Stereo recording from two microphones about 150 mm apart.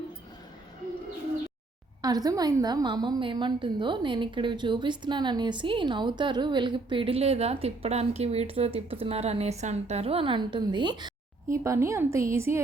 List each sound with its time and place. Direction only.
2.0 s a woman's voice: 25° right (ahead or behind)